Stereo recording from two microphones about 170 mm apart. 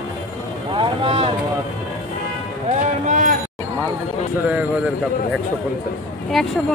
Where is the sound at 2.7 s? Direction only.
45° right (ahead or behind).